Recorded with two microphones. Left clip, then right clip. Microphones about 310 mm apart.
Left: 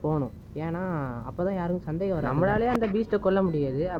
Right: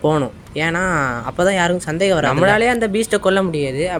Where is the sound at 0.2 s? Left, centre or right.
Left.